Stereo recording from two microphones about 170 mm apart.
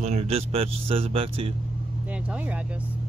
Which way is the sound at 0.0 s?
35° right (ahead or behind).